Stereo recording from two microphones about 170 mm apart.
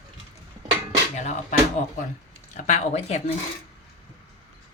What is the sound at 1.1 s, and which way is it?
Speech, 45° left (ahead or behind).